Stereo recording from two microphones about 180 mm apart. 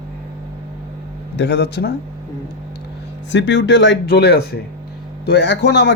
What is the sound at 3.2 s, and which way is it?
A man's voice, 85° left.